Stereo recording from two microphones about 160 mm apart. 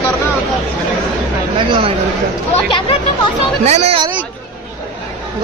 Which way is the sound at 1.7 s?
35° right (ahead or behind).